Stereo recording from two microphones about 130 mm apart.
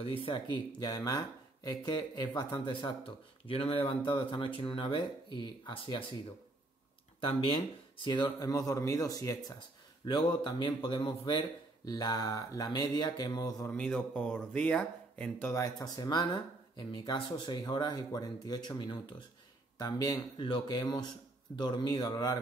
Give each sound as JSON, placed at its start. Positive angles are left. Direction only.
{"t": 0.0, "sound": "a man's voice", "side_deg": 45}
{"t": 7.2, "sound": "speech", "side_deg": 40}
{"t": 10.0, "sound": "a man's voice", "side_deg": 35}
{"t": 13.7, "sound": "speech", "side_deg": 10}
{"t": 15.5, "sound": "a man's voice", "side_deg": 25}